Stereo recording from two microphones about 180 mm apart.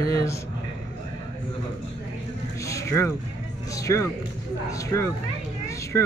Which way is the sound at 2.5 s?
15° left (ahead or behind).